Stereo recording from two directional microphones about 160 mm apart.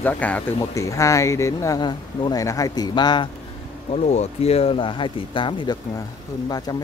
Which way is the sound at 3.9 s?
45° left (ahead or behind).